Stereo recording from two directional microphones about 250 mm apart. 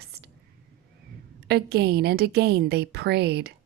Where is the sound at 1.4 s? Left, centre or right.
Right.